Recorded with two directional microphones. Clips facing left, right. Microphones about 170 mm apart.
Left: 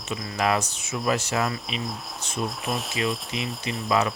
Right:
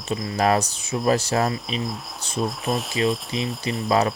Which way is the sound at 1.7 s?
Centre (ahead or behind).